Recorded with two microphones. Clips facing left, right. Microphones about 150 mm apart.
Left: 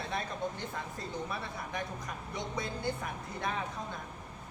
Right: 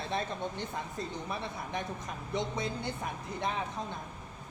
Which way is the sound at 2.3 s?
20° right (ahead or behind).